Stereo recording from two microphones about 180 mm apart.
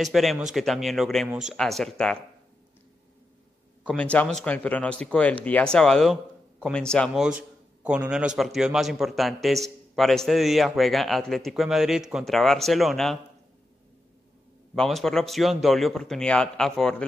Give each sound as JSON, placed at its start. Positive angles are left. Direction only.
{"t": 0.0, "sound": "a man's voice", "side_deg": 0}
{"t": 3.8, "sound": "a man's voice", "side_deg": 5}
{"t": 14.8, "sound": "a man's voice", "side_deg": 0}